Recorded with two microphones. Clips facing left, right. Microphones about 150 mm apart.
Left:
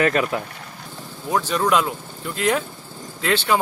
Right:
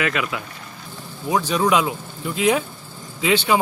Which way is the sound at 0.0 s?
40° left (ahead or behind).